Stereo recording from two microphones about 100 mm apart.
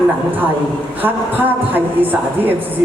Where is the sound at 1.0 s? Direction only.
20° right (ahead or behind).